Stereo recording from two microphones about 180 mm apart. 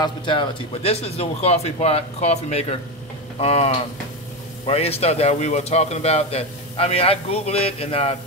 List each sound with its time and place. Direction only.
0.0 s a man's voice: 25° left (ahead or behind)